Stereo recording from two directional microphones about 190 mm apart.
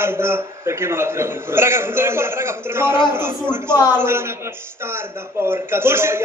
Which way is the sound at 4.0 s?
15° right (ahead or behind).